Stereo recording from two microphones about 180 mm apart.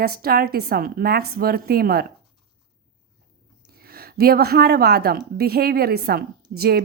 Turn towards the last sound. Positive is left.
turn(degrees=-60)  # may be behind; listen again after turning